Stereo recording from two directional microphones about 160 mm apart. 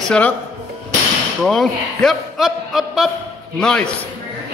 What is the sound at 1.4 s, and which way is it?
A man's voice, centre (ahead or behind).